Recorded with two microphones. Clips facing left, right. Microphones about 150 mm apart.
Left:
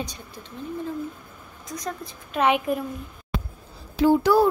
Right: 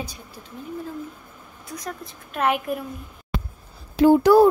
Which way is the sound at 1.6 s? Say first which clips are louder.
Left 2 dB; 5° right (ahead or behind).